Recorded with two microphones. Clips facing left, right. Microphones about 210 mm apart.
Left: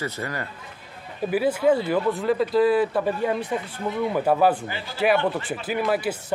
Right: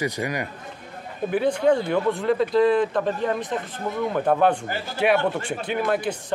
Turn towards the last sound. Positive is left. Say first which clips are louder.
# even
turn(degrees=5)  # may be behind; listen again after turning